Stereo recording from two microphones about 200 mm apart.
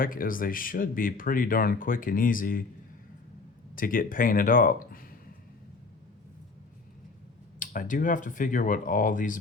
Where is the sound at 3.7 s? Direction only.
45° left (ahead or behind).